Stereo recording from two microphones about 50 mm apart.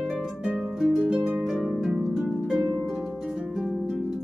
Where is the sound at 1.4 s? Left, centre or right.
Centre.